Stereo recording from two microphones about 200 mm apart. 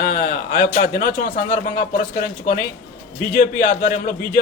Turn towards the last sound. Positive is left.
turn(degrees=45)  # may be behind; listen again after turning